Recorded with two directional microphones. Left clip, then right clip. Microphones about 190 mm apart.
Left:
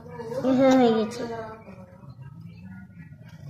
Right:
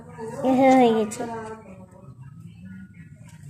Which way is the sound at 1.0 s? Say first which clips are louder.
Right 2 dB; 35° right (ahead or behind).